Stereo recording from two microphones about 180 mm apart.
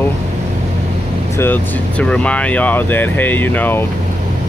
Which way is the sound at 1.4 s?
10° left (ahead or behind).